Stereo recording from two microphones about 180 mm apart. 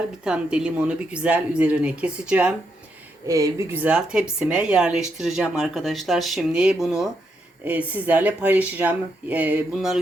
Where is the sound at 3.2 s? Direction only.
15° right (ahead or behind).